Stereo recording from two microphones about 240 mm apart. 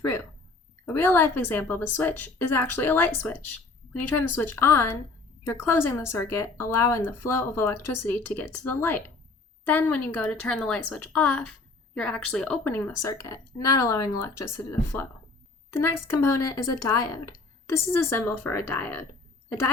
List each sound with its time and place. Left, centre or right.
0.9 s a woman's voice: centre
3.9 s a woman's voice: left
4.2 s a woman's voice: centre